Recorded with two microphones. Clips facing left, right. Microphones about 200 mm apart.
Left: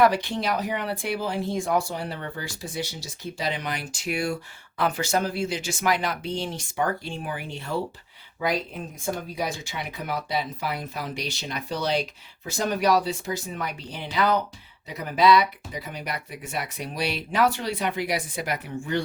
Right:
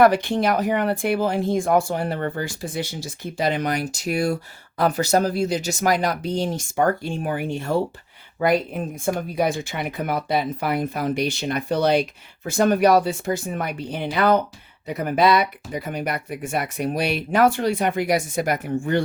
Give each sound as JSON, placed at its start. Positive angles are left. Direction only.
{"t": 0.0, "sound": "speech", "side_deg": -50}